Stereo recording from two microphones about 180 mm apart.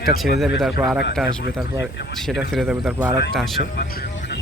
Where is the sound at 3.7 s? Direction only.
65° left (ahead or behind).